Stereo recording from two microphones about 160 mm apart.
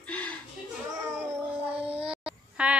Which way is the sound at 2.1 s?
5° right (ahead or behind).